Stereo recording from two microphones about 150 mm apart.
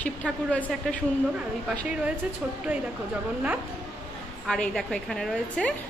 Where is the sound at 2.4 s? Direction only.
10° right (ahead or behind).